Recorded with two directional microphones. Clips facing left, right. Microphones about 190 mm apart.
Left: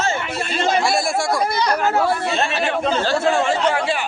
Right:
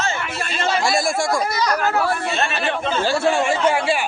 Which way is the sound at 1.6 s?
25° left (ahead or behind).